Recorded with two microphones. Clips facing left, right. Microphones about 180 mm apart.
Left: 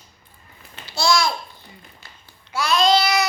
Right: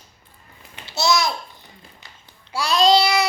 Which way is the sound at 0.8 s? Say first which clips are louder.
Even; 20° right (ahead or behind).